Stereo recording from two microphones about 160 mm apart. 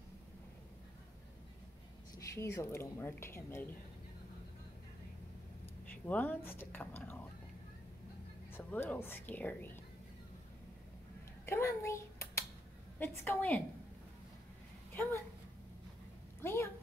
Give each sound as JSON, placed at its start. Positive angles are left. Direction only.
{"t": 2.1, "sound": "speech", "side_deg": 15}
{"t": 6.0, "sound": "speech", "side_deg": 10}
{"t": 8.5, "sound": "speech", "side_deg": 15}
{"t": 11.4, "sound": "a sound", "side_deg": 15}
{"t": 13.0, "sound": "speech", "side_deg": 10}
{"t": 16.3, "sound": "a sound", "side_deg": 15}